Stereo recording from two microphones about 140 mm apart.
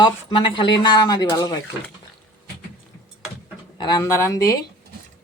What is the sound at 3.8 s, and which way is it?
Speech, 30° left (ahead or behind).